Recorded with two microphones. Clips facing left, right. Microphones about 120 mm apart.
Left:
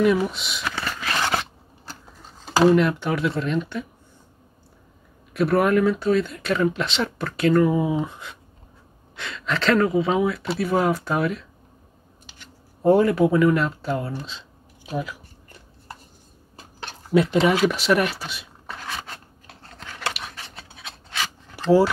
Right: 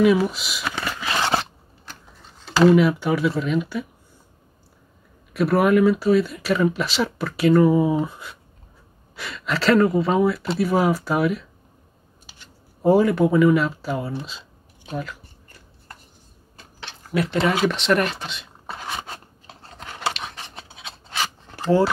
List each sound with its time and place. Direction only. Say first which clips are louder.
0.0 s speech: right 2 dB; 5° right (ahead or behind)
0.7 s a sound: right 1 dB; 10° right (ahead or behind)
1.0 s scissors: right 2 dB; 25° right (ahead or behind)
2.7 s speech: right 2 dB; 5° right (ahead or behind)
5.3 s speech: right 1 dB; centre (ahead or behind)
12.8 s speech: even; centre (ahead or behind)
14.2 s a sound: even; 5° right (ahead or behind)
14.9 s speech: left 2 dB; 5° left (ahead or behind)
17.1 s speech: left 5 dB; 25° left (ahead or behind)
17.6 s speech: even; 5° left (ahead or behind)
18.8 s writing: right 2 dB; 20° right (ahead or behind)
20.0 s a sound: right 3 dB; centre (ahead or behind)
20.3 s scratch: right 2 dB; 20° right (ahead or behind)